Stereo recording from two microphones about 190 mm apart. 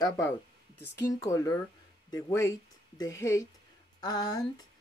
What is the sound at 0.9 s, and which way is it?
Speech, 15° left (ahead or behind).